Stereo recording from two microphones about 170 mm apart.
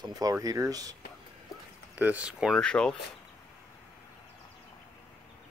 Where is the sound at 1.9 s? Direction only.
10° right (ahead or behind).